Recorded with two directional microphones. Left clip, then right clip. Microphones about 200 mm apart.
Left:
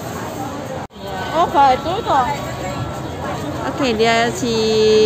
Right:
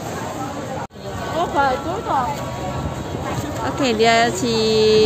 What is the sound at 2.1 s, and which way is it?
Speech, 60° left (ahead or behind).